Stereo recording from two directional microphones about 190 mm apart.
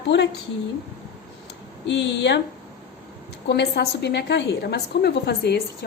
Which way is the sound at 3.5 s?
60° left (ahead or behind).